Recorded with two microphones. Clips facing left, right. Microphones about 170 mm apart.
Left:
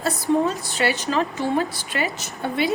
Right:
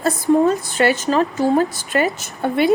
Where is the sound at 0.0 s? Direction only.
50° right (ahead or behind).